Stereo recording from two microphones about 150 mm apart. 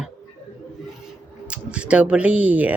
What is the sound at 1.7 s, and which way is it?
Speech, 10° right (ahead or behind).